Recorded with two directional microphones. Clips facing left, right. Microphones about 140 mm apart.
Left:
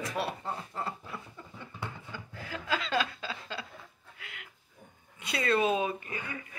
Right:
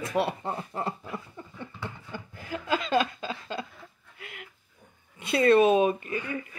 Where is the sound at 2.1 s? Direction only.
20° right (ahead or behind).